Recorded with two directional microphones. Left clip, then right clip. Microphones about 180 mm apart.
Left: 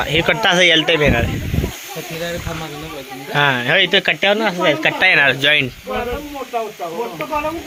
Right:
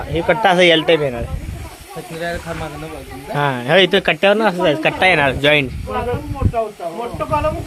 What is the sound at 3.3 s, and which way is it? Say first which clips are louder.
Speech: left 2 dB; 10° right (ahead or behind).